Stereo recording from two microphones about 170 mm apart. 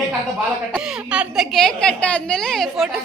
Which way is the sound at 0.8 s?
5° right (ahead or behind).